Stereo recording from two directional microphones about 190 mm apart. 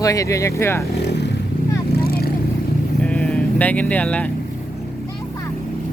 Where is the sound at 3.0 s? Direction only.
5° left (ahead or behind).